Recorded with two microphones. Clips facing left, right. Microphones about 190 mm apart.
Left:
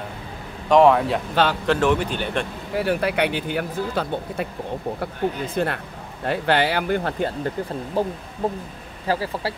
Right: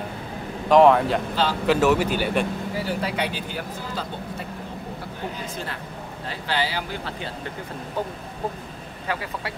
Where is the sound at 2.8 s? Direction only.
60° left (ahead or behind).